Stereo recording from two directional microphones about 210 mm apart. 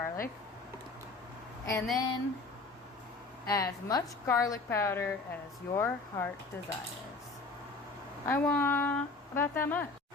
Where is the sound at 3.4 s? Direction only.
15° left (ahead or behind).